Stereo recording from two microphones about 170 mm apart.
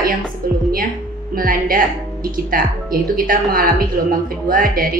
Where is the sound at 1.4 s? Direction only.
55° right (ahead or behind).